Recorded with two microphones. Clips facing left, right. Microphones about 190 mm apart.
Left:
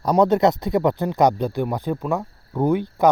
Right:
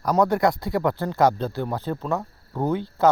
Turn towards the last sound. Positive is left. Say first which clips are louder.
# left 3 dB
turn(degrees=15)  # may be behind; listen again after turning